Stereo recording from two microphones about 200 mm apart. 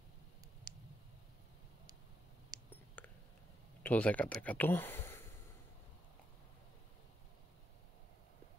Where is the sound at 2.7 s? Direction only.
10° left (ahead or behind).